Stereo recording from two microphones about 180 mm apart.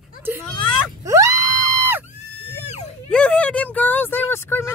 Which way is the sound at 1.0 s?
20° right (ahead or behind).